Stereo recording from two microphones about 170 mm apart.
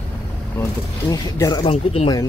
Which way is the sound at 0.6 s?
20° left (ahead or behind).